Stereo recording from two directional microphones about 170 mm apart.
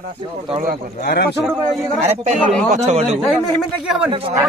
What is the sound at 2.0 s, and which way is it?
Speech, 40° right (ahead or behind).